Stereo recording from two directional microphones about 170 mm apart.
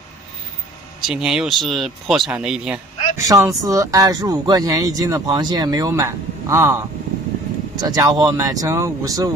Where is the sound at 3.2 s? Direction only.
20° right (ahead or behind).